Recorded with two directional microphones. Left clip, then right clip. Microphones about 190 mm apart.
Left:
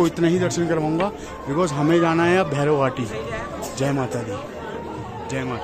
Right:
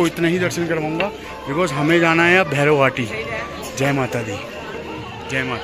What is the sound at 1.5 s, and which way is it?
Speech, 5° left (ahead or behind).